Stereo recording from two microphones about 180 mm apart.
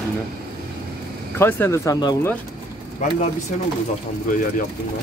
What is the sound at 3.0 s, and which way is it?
Speech, 40° left (ahead or behind).